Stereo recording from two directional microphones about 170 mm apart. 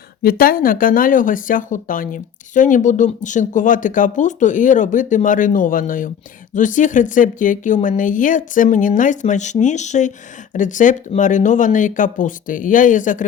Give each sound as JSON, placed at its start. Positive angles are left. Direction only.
{"t": 0.2, "sound": "speech", "side_deg": 60}